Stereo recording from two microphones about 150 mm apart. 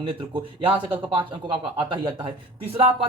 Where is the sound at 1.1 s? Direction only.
30° right (ahead or behind).